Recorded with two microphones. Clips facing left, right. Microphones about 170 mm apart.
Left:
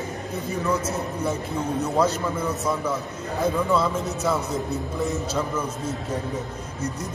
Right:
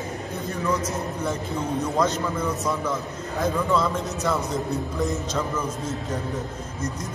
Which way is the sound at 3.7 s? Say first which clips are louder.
Left 1 dB; 5° left (ahead or behind).